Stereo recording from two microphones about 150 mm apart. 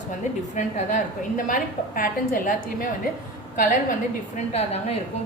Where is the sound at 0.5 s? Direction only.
55° left (ahead or behind).